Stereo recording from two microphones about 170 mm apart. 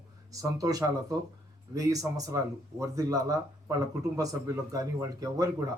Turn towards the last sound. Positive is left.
turn(degrees=-20)  # may be behind; listen again after turning